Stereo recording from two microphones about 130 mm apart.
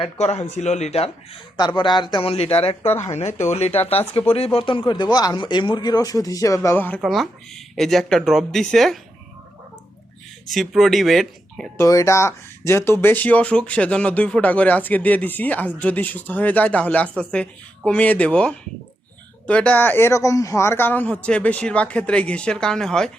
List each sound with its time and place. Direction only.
0.0 s speech: 55° left (ahead or behind)
1.5 s speech: 35° left (ahead or behind)
2.1 s speech: 50° left (ahead or behind); by 6.7 s 25° left (ahead or behind)
6.7 s speech: 10° left (ahead or behind)
7.0 s speech: centre (ahead or behind)
10.5 s speech: centre (ahead or behind)
11.8 s speech: 25° left (ahead or behind); by 23.1 s 5° left (ahead or behind)